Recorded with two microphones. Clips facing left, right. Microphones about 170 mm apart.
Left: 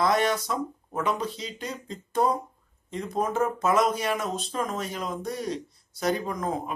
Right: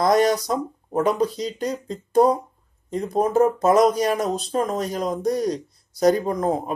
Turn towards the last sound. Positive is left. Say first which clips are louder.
# right 7 dB
turn(degrees=-35)  # may be behind; listen again after turning